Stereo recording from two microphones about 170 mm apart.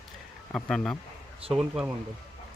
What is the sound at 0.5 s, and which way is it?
Speech, 5° left (ahead or behind).